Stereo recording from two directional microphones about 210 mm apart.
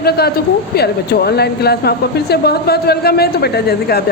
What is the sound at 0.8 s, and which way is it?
A woman's voice, 50° left (ahead or behind).